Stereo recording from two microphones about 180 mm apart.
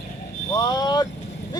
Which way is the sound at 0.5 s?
25° left (ahead or behind).